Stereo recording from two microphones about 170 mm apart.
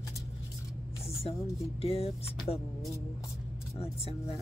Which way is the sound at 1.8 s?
35° left (ahead or behind).